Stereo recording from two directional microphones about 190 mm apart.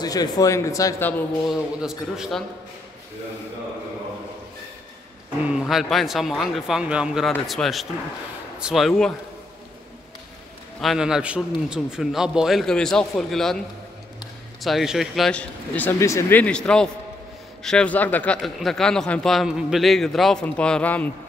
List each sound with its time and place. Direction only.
0.0 s a man's voice: 20° left (ahead or behind)
1.5 s speech: 5° right (ahead or behind)
5.5 s speech: centre (ahead or behind)
10.8 s speech: centre (ahead or behind)
14.6 s speech: centre (ahead or behind)